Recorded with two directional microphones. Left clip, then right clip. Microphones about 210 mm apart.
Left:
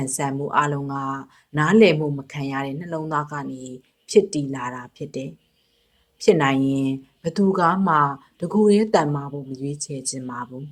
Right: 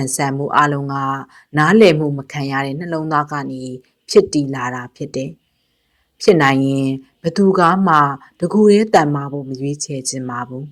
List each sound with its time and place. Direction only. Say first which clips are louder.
0.0 s speech: right 6 dB; 35° right (ahead or behind)